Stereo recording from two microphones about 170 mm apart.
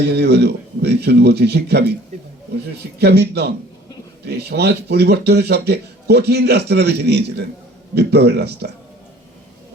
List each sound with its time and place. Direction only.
0.0 s a man's voice: 80° right
3.0 s a man's voice: 75° right (ahead or behind)